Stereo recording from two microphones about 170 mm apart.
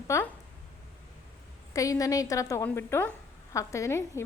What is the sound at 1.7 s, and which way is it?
A woman's voice, 20° left (ahead or behind).